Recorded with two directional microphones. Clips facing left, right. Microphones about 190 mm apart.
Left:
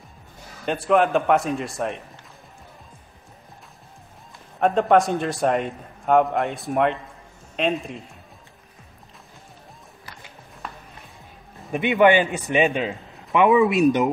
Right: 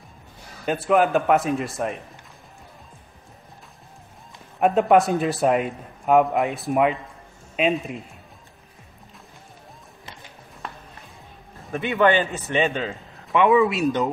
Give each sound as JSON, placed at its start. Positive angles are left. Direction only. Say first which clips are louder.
{"t": 0.7, "sound": "a man's voice", "louder": "even", "side_deg": 0}
{"t": 4.6, "sound": "a man's voice", "louder": "right 1 dB", "side_deg": -5}
{"t": 11.7, "sound": "a man's voice", "louder": "left 3 dB", "side_deg": 15}